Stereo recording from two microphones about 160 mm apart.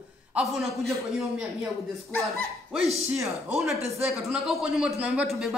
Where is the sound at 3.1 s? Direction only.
Centre (ahead or behind).